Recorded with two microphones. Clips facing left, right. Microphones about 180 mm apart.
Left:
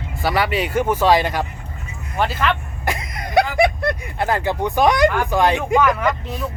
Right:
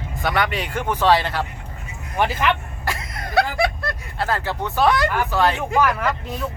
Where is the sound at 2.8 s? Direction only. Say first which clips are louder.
Left 3 dB; 20° left (ahead or behind).